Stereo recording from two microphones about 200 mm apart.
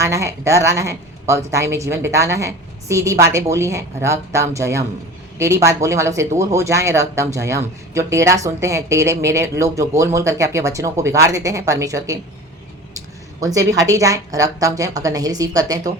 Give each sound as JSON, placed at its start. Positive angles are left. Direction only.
{"t": 0.0, "sound": "speech", "side_deg": -15}
{"t": 13.4, "sound": "speech", "side_deg": -15}